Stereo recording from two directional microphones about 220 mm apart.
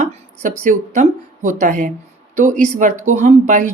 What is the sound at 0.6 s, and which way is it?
A woman's voice, 35° right (ahead or behind).